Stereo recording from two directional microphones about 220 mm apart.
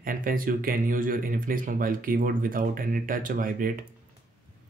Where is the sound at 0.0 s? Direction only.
40° right (ahead or behind).